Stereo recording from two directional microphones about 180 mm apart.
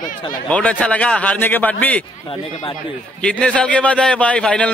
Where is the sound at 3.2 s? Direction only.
5° left (ahead or behind).